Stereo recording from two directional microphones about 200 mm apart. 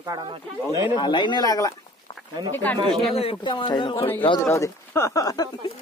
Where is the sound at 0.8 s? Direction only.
25° left (ahead or behind); by 3.2 s centre (ahead or behind).